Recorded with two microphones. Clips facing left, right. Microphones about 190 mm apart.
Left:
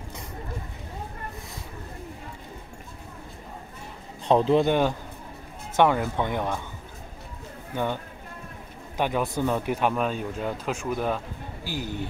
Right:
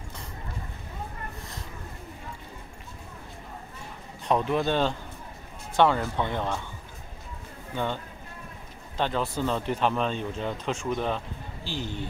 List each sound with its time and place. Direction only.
4.3 s speech: 30° left (ahead or behind)
4.6 s speech: 10° left (ahead or behind)
7.7 s speech: 10° left (ahead or behind)